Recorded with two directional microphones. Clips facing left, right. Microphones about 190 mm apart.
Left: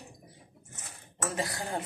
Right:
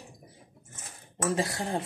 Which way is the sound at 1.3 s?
25° right (ahead or behind).